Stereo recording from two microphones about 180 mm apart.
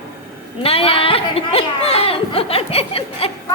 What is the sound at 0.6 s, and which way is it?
Speech, 30° left (ahead or behind).